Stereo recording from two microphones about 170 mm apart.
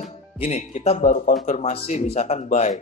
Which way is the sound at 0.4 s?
40° left (ahead or behind).